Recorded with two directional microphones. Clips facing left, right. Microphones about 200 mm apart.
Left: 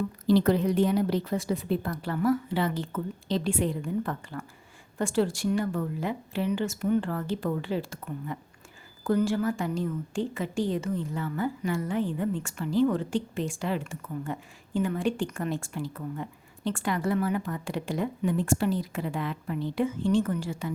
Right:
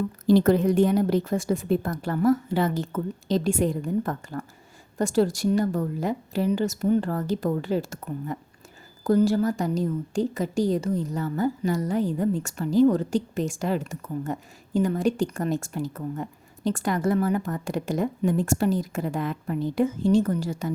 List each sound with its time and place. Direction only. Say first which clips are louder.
0.3 s a woman's voice: right 4 dB; 45° right (ahead or behind)